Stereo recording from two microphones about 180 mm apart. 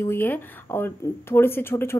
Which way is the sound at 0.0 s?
10° left (ahead or behind).